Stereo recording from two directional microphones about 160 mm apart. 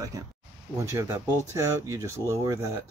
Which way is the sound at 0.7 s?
15° right (ahead or behind).